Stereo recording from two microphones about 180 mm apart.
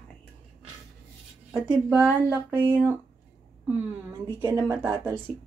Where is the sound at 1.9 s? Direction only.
10° right (ahead or behind).